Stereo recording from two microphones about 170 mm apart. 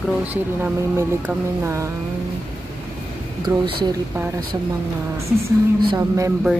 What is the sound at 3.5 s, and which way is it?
Speech, 20° right (ahead or behind).